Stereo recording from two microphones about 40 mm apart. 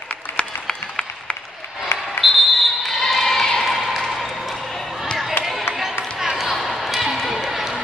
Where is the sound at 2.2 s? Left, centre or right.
Centre.